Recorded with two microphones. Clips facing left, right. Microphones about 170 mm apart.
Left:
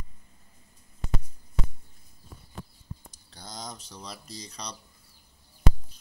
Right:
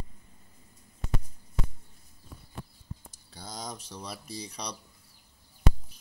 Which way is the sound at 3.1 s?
5° right (ahead or behind).